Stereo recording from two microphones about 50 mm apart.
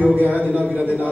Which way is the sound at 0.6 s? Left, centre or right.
Right.